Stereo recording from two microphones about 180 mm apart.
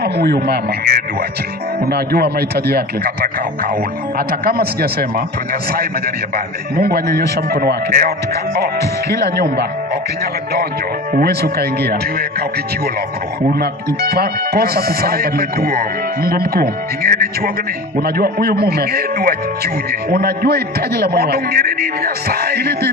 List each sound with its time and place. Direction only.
0.0 s speech: 60° right (ahead or behind)
4.3 s speech: 55° right (ahead or behind)
6.3 s speech: 60° right (ahead or behind)
9.1 s speech: 65° right (ahead or behind)
11.1 s speech: 60° right (ahead or behind)
13.5 s speech: 60° right (ahead or behind)